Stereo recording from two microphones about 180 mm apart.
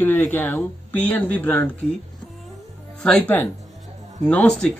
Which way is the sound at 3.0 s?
5° left (ahead or behind).